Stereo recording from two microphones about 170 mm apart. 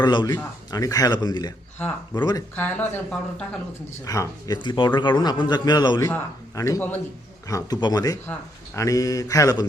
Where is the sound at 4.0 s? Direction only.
20° left (ahead or behind).